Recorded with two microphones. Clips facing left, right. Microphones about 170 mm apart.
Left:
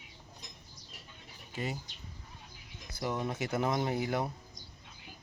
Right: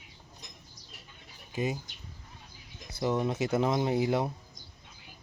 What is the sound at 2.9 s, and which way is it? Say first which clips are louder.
Speech: right 6 dB; 20° right (ahead or behind).